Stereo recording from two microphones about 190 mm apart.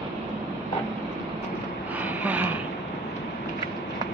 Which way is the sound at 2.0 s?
10° right (ahead or behind).